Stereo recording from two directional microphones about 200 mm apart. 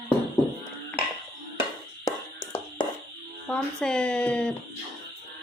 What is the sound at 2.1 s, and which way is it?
Music, 20° left (ahead or behind).